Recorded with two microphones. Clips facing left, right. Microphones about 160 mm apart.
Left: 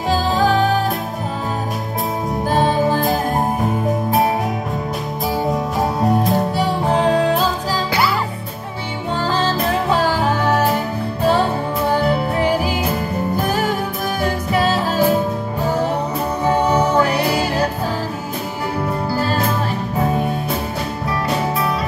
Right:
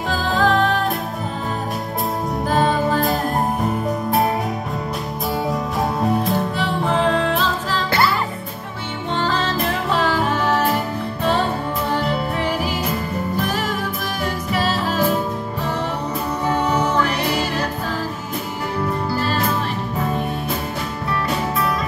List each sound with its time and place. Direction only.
0.1 s music: centre (ahead or behind)
2.5 s music: centre (ahead or behind)
5.5 s music: centre (ahead or behind)
6.3 s music: 40° left (ahead or behind)
9.2 s music: 35° left (ahead or behind)
16.4 s music: 35° left (ahead or behind)